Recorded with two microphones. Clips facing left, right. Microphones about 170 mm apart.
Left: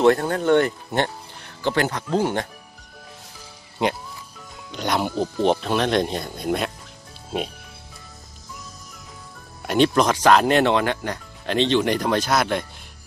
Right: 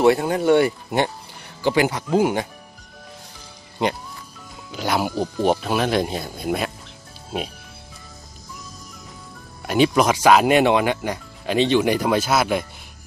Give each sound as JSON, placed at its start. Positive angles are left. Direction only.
{"t": 0.0, "sound": "speech", "side_deg": -10}
{"t": 3.8, "sound": "speech", "side_deg": 0}
{"t": 9.6, "sound": "speech", "side_deg": -5}